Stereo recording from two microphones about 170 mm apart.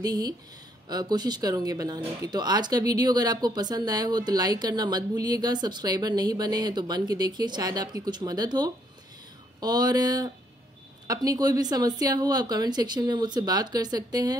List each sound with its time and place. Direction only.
0.0 s speech: 20° right (ahead or behind)